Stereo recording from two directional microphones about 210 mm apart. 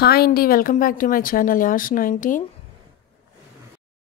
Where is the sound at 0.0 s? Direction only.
50° left (ahead or behind).